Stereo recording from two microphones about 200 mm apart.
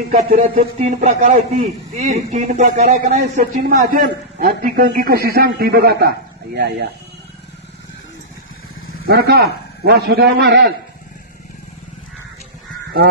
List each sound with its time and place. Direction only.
0.6 s a man's voice: 30° right (ahead or behind); by 6.9 s 55° right (ahead or behind)
9.0 s a man's voice: 55° right (ahead or behind)